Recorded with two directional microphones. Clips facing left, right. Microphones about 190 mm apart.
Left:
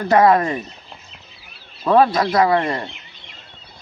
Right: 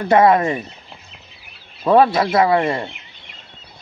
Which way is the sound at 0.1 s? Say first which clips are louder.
Right 1 dB; 25° right (ahead or behind).